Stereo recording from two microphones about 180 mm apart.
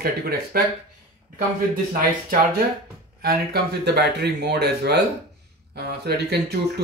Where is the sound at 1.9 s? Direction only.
50° right (ahead or behind).